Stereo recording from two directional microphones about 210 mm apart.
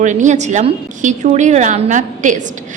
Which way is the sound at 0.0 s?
35° right (ahead or behind).